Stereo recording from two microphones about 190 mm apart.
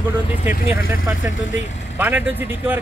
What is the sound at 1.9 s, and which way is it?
Speech, 10° right (ahead or behind).